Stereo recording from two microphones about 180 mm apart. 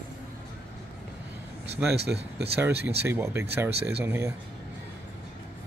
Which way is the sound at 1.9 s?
65° right (ahead or behind).